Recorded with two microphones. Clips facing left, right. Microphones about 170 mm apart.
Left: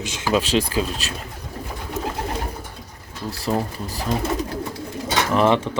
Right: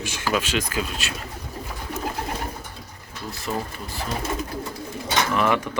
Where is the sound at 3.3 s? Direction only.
35° left (ahead or behind).